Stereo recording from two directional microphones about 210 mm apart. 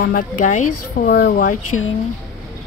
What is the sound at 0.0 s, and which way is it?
Speech, 40° left (ahead or behind).